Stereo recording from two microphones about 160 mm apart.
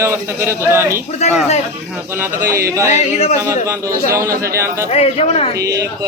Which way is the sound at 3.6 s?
20° right (ahead or behind).